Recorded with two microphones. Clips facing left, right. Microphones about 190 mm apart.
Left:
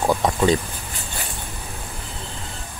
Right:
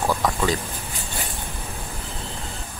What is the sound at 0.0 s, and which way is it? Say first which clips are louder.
Speech: left 3 dB; 20° left (ahead or behind).